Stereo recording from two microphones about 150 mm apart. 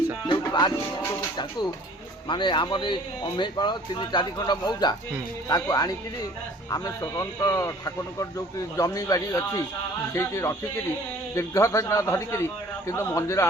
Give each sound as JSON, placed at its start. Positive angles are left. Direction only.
{"t": 0.3, "sound": "music", "side_deg": 30}
{"t": 2.2, "sound": "speech", "side_deg": 30}